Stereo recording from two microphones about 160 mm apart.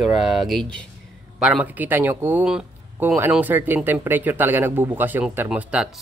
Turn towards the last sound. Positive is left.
turn(degrees=-5)  # may be behind; listen again after turning